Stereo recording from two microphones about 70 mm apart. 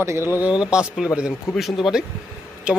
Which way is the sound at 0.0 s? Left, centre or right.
Right.